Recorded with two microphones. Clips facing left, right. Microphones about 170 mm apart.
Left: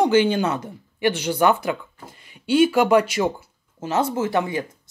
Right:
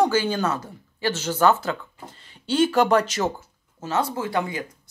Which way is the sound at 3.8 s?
25° left (ahead or behind).